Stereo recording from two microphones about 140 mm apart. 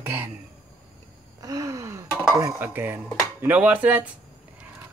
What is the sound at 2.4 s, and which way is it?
Speech, 15° right (ahead or behind).